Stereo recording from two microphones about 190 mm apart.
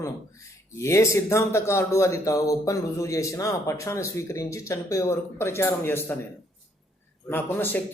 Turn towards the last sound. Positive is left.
turn(degrees=10)  # may be behind; listen again after turning